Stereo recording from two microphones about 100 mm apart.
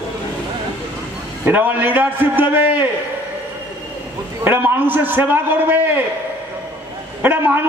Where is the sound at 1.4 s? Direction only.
20° right (ahead or behind).